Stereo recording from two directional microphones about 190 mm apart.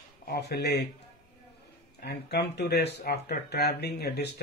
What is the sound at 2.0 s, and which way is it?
Speech, 60° left (ahead or behind).